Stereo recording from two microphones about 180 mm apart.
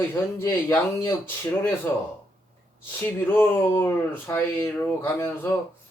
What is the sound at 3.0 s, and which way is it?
Speech, 10° left (ahead or behind).